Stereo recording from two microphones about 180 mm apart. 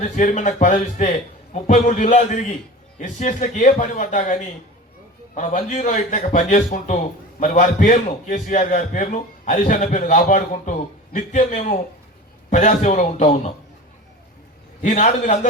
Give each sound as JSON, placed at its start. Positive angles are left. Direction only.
{"t": 0.0, "sound": "a man's voice", "side_deg": 40}
{"t": 14.8, "sound": "a man's voice", "side_deg": 40}